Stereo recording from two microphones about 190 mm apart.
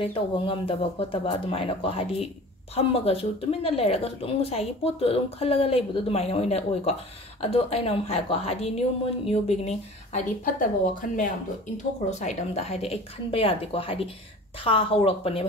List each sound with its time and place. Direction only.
0.0 s speech: 30° left (ahead or behind)